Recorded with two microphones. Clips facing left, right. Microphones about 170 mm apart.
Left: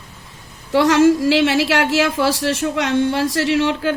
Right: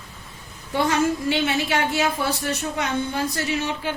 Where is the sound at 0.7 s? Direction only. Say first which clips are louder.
Left 9 dB; 90° left.